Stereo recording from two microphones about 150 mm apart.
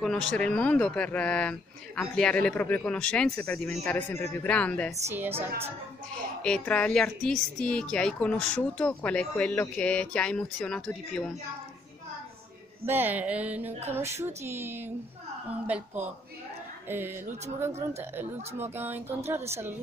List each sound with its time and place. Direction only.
0.0 s a woman's voice: 5° left (ahead or behind)
5.0 s speech: 15° right (ahead or behind)
6.1 s a woman's voice: 5° left (ahead or behind)
12.8 s speech: 15° right (ahead or behind)